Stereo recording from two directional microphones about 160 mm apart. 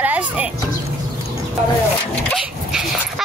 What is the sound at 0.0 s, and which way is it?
Speech, 10° right (ahead or behind).